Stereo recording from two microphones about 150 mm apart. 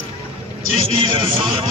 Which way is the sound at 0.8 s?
35° right (ahead or behind).